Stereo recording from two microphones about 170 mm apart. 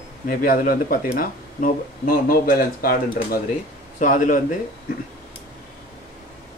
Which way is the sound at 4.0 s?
50° left (ahead or behind).